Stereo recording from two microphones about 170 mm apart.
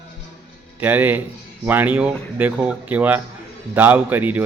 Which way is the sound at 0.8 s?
10° right (ahead or behind).